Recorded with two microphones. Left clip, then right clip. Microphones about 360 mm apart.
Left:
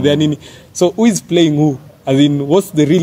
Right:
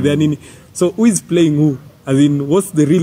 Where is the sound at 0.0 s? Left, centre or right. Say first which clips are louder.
Left 2 dB; centre.